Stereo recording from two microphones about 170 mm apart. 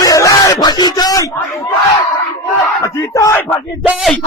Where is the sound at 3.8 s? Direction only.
Centre (ahead or behind).